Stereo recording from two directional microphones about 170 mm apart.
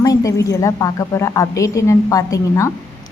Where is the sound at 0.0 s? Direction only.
20° left (ahead or behind).